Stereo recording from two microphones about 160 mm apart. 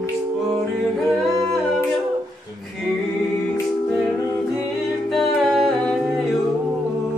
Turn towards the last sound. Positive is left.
turn(degrees=0)  # may be behind; listen again after turning